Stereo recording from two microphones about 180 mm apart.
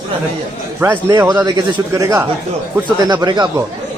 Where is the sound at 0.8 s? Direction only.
15° right (ahead or behind).